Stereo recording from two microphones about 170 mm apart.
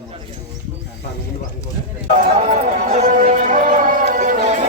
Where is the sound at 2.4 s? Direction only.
50° right (ahead or behind).